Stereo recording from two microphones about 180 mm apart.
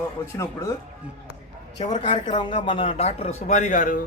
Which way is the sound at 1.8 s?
40° left (ahead or behind).